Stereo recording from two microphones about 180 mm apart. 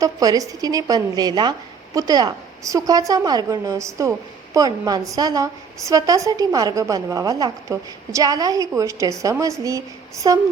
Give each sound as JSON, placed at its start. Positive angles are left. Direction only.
{"t": 0.0, "sound": "a woman's voice", "side_deg": -20}